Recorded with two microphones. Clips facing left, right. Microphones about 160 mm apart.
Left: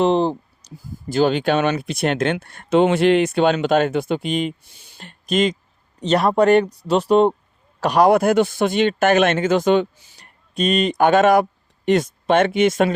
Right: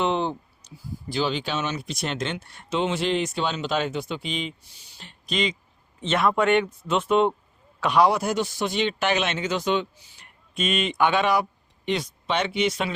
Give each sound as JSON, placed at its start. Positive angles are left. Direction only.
{"t": 0.0, "sound": "speech", "side_deg": 35}